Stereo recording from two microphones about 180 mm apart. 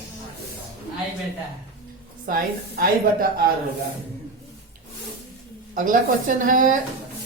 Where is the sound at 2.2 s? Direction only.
50° right (ahead or behind).